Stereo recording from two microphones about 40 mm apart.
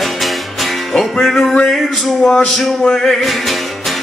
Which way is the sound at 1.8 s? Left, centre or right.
Centre.